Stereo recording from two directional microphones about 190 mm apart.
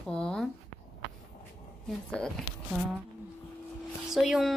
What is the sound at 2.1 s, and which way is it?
Speech, 5° left (ahead or behind).